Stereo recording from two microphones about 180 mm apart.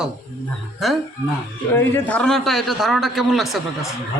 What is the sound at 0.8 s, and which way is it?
A man's voice, centre (ahead or behind).